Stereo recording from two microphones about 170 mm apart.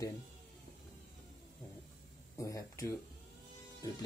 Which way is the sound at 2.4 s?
20° left (ahead or behind).